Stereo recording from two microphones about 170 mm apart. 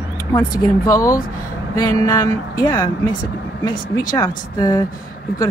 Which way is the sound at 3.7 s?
55° left (ahead or behind).